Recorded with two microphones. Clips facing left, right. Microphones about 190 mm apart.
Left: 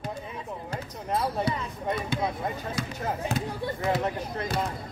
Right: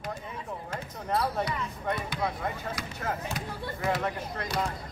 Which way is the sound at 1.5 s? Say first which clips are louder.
Left 3 dB; 25° left (ahead or behind).